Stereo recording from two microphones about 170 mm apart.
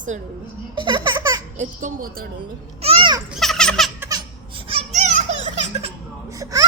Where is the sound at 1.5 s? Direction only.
50° right (ahead or behind).